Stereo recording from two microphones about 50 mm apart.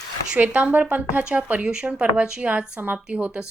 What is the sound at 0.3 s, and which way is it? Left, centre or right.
Speech, right.